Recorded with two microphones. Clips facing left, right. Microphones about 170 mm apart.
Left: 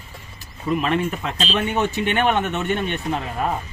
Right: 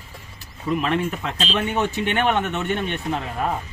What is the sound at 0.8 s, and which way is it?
Speech, 15° left (ahead or behind).